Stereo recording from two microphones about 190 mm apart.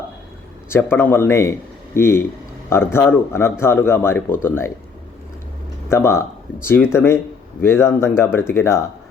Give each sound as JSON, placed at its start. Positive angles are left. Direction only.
{"t": 0.7, "sound": "a man's voice", "side_deg": 10}
{"t": 5.9, "sound": "a man's voice", "side_deg": 15}